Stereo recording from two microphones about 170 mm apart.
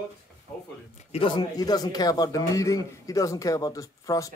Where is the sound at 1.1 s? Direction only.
30° left (ahead or behind).